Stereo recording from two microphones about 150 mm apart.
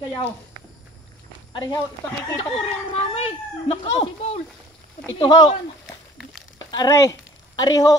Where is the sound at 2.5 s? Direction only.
40° left (ahead or behind).